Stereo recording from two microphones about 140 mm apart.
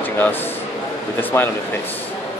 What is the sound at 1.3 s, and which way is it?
Speech, 20° left (ahead or behind).